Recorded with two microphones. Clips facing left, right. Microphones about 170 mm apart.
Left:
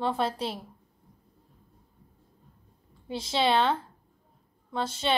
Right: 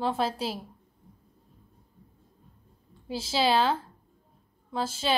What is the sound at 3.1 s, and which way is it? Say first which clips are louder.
Speech: even; 5° right (ahead or behind).